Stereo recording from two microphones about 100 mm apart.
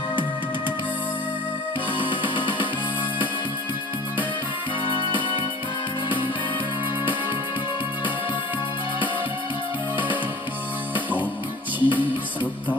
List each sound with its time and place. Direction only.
11.8 s music: 20° right (ahead or behind)